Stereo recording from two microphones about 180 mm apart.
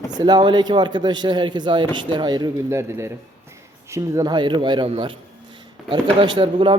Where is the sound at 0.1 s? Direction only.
25° right (ahead or behind).